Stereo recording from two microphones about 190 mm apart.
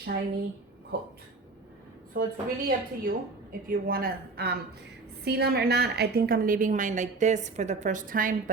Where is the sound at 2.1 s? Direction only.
50° right (ahead or behind).